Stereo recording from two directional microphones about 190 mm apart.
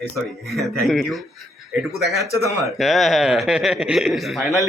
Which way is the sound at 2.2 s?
15° left (ahead or behind).